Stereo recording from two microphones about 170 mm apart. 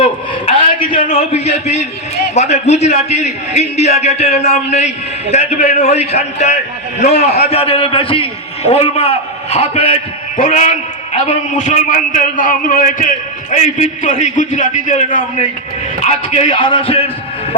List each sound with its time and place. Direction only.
0.0 s a sound: 30° left (ahead or behind)
2.3 s a man's voice: 40° left (ahead or behind)
10.3 s a man's voice: 50° left (ahead or behind); by 17.1 s 30° left (ahead or behind)